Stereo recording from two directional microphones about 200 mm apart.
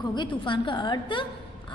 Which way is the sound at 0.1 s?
25° left (ahead or behind).